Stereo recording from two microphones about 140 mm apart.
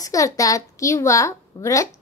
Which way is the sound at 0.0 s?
25° left (ahead or behind).